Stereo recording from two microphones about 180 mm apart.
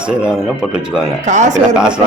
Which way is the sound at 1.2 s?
40° right (ahead or behind).